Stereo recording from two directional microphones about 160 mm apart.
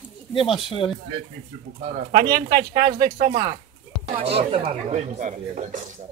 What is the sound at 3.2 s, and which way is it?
Speech, 45° right (ahead or behind).